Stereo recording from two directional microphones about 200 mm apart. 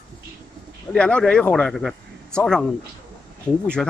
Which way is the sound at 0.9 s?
5° left (ahead or behind).